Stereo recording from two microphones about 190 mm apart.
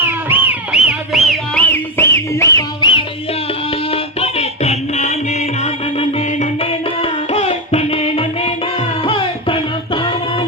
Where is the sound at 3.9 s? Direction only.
30° left (ahead or behind).